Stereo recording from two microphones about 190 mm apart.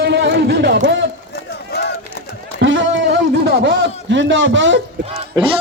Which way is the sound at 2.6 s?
80° right.